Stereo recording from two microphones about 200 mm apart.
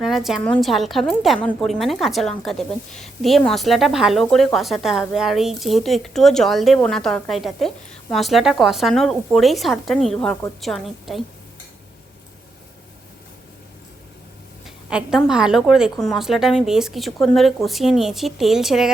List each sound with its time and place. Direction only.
0.0 s a woman's voice: centre (ahead or behind)
14.8 s a woman's voice: 5° right (ahead or behind)